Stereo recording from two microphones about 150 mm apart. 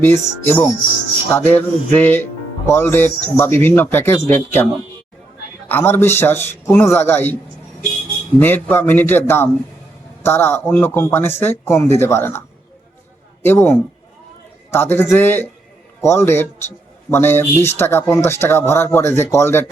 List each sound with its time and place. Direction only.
0.0 s a man's voice: 15° left (ahead or behind)
8.4 s a man's voice: 10° left (ahead or behind)
13.4 s a man's voice: 15° left (ahead or behind)